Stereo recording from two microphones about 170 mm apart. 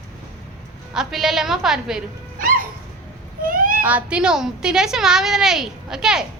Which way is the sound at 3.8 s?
10° right (ahead or behind).